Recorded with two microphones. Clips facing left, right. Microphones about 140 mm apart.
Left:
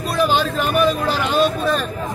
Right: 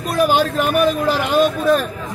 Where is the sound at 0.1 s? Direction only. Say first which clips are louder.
Right 3 dB; 45° right (ahead or behind).